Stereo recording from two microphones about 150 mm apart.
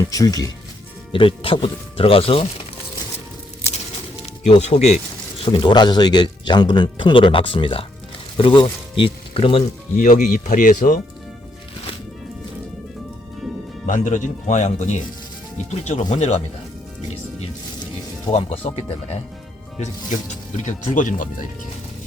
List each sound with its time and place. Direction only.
0.1 s speech: 25° left (ahead or behind)
1.1 s speech: 35° left (ahead or behind)
4.4 s speech: 45° left (ahead or behind)
5.4 s speech: 35° left (ahead or behind)
10.0 s speech: 60° left (ahead or behind)
13.8 s speech: 60° left (ahead or behind)
18.3 s speech: 45° left (ahead or behind)
20.7 s speech: 60° left (ahead or behind)